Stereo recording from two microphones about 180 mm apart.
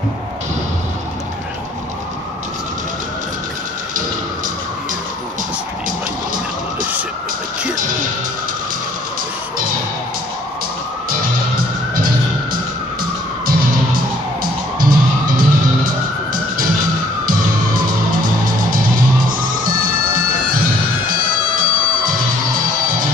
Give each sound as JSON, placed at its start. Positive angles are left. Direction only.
{"t": 5.9, "sound": "music", "side_deg": -50}
{"t": 13.5, "sound": "music", "side_deg": -50}
{"t": 21.1, "sound": "music", "side_deg": -50}